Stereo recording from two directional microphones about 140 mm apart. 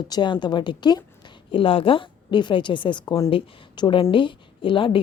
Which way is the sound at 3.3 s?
40° left (ahead or behind).